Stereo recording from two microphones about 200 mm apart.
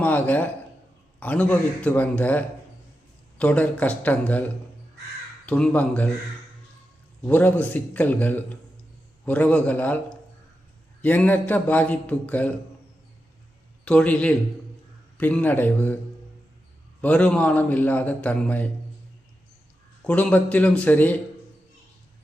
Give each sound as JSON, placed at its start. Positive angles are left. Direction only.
{"t": 0.0, "sound": "a man's voice", "side_deg": 10}
{"t": 5.5, "sound": "a man's voice", "side_deg": 5}
{"t": 7.3, "sound": "a man's voice", "side_deg": 10}
{"t": 13.8, "sound": "a man's voice", "side_deg": 5}
{"t": 17.0, "sound": "a man's voice", "side_deg": 5}
{"t": 20.1, "sound": "a man's voice", "side_deg": 5}